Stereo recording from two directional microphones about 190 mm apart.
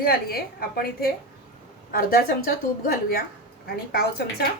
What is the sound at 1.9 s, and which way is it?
Speech, 50° left (ahead or behind).